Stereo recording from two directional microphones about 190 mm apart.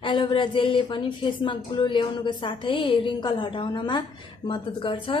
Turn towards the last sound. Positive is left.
turn(degrees=25)  # may be behind; listen again after turning